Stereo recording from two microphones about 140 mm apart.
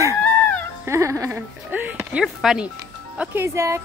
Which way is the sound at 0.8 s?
20° right (ahead or behind).